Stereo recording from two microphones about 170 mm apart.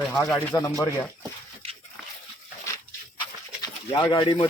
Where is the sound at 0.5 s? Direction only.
20° left (ahead or behind).